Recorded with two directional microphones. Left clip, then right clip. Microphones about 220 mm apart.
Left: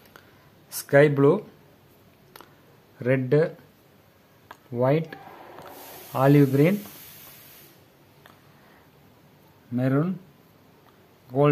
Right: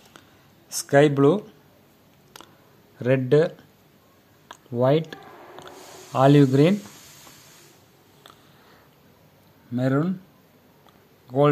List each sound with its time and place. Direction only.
0.7 s speech: 15° right (ahead or behind)
3.0 s speech: 20° right (ahead or behind)
9.8 s speech: 15° right (ahead or behind)